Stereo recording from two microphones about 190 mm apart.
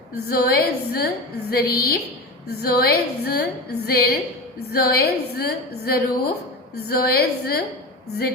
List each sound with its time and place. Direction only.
0.1 s a woman's voice: 55° left (ahead or behind)